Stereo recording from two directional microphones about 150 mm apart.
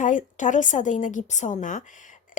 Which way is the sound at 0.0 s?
55° left (ahead or behind).